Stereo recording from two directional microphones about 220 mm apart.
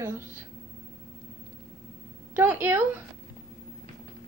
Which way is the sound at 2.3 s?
10° right (ahead or behind).